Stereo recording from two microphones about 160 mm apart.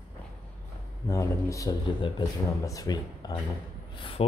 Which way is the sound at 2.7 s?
20° left (ahead or behind).